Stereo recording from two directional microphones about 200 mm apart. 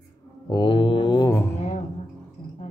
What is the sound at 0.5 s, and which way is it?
Mantra, 25° left (ahead or behind).